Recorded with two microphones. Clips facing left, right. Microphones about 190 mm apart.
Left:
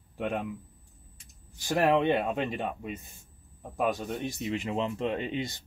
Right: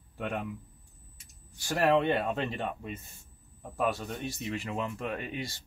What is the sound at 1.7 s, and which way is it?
Speech, 15° left (ahead or behind).